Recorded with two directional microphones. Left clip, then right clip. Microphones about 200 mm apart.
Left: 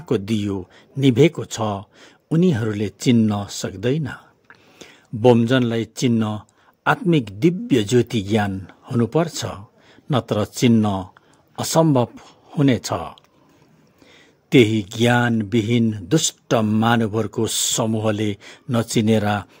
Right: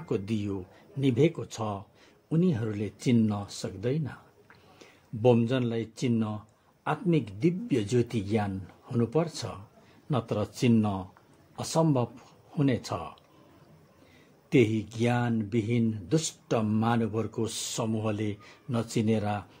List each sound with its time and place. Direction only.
0.0 s speech: 40° left (ahead or behind)
14.5 s speech: 40° left (ahead or behind)